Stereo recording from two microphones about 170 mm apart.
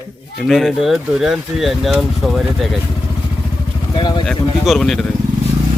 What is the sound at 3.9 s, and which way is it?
Speech, 25° left (ahead or behind).